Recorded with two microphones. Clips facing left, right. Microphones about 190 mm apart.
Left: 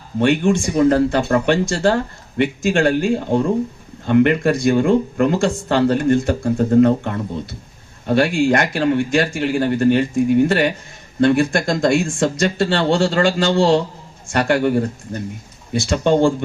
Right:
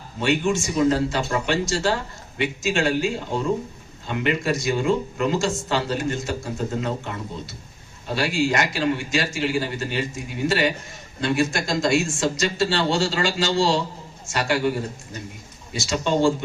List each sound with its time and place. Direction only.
0.2 s speech: 55° left (ahead or behind)